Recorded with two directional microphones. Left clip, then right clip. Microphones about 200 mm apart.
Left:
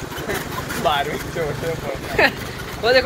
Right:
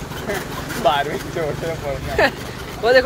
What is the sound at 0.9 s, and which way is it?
Vehicle, 40° right (ahead or behind).